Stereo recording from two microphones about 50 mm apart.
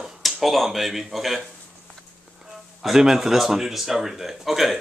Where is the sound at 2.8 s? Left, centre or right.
Centre.